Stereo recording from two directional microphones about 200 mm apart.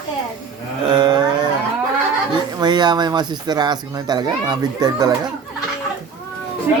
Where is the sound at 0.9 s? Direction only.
20° right (ahead or behind).